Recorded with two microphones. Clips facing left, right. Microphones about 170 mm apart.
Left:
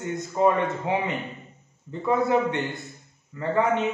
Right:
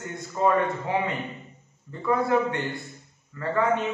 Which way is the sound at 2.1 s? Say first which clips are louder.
Left 1 dB; 20° left (ahead or behind).